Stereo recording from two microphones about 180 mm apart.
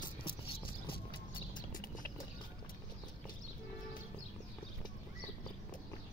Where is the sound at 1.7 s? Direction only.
50° left (ahead or behind).